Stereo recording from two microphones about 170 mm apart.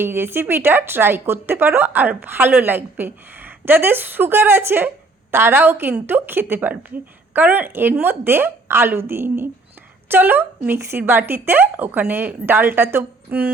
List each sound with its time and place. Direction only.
0.0 s a woman's voice: 15° right (ahead or behind)